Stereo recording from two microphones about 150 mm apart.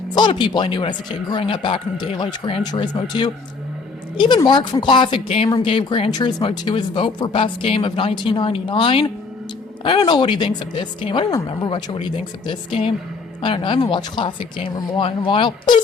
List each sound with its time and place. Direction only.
0.1 s speech: 30° left (ahead or behind)
4.4 s speech: 30° left (ahead or behind)